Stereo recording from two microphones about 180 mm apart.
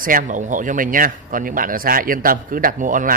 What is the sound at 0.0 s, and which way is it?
Speech, 45° right (ahead or behind).